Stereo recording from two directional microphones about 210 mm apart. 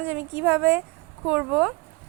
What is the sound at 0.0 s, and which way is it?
Speech, 10° right (ahead or behind).